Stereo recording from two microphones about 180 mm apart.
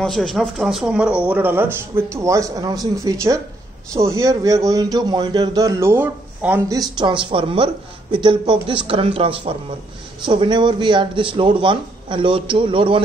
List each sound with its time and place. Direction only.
0.0 s speech: 5° left (ahead or behind)
6.7 s speech: 25° right (ahead or behind)